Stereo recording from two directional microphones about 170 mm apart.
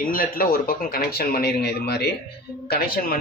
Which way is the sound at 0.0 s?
55° left (ahead or behind).